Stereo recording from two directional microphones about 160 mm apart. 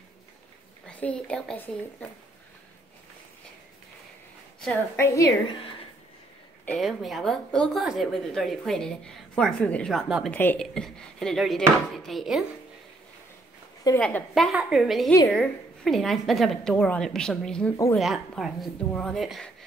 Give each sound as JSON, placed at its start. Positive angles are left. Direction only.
{"t": 0.8, "sound": "a woman's voice", "side_deg": 10}
{"t": 4.9, "sound": "a woman's voice", "side_deg": 15}
{"t": 6.6, "sound": "a woman's voice", "side_deg": 5}
{"t": 10.3, "sound": "a woman's voice", "side_deg": 10}
{"t": 13.9, "sound": "a woman's voice", "side_deg": 5}